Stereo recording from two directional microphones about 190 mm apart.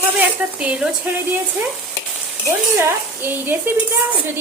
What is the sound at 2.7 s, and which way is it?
Speech, 10° right (ahead or behind).